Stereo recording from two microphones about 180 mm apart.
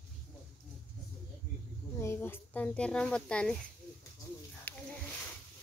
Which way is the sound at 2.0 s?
15° left (ahead or behind).